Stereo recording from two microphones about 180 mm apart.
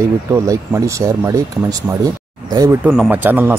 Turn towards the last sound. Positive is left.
turn(degrees=-10)  # may be behind; listen again after turning